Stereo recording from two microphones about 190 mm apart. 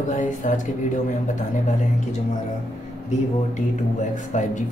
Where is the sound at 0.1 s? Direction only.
40° left (ahead or behind).